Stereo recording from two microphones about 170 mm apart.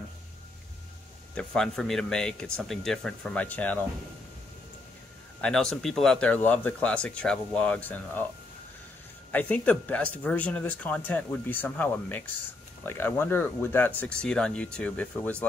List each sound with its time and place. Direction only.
1.3 s speech: 5° left (ahead or behind)
5.4 s speech: 5° left (ahead or behind)
9.3 s speech: 10° left (ahead or behind)